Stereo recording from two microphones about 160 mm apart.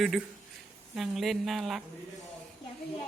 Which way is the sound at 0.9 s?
Centre (ahead or behind).